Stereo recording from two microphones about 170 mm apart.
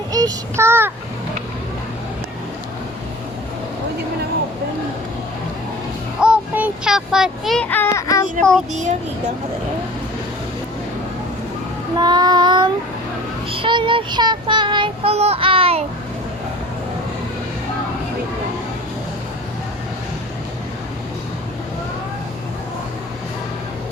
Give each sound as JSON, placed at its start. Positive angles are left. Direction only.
{"t": 0.1, "sound": "child singing", "side_deg": -20}
{"t": 6.1, "sound": "child singing", "side_deg": -5}
{"t": 8.7, "sound": "a child's voice", "side_deg": -45}
{"t": 11.9, "sound": "child singing", "side_deg": -25}